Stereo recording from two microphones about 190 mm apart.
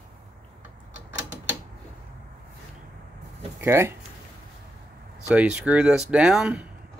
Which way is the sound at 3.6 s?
15° right (ahead or behind).